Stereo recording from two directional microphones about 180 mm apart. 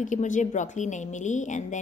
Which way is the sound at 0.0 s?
45° left (ahead or behind).